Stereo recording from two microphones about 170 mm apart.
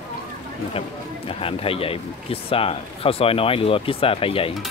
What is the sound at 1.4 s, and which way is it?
Speech, 35° left (ahead or behind).